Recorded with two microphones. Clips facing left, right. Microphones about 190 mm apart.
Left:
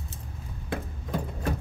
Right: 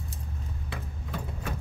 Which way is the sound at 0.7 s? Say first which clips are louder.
Left 8 dB; 45° left (ahead or behind).